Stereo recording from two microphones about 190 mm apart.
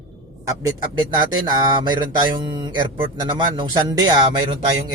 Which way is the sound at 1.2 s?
20° right (ahead or behind).